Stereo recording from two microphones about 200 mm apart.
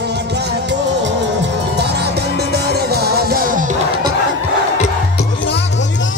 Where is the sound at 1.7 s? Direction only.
55° right (ahead or behind).